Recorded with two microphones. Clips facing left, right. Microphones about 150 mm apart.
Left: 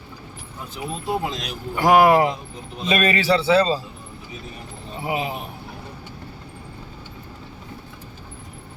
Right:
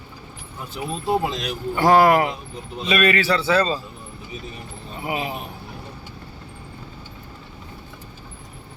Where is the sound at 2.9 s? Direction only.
35° left (ahead or behind).